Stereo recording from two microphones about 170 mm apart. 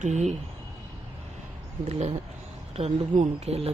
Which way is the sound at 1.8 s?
40° right (ahead or behind).